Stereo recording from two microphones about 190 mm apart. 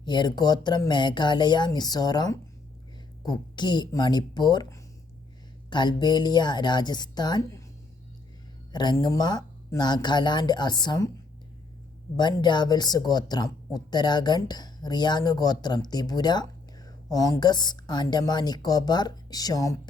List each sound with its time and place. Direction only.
0.0 s speech: 25° left (ahead or behind)
8.7 s speech: 20° left (ahead or behind)
12.1 s speech: 25° left (ahead or behind)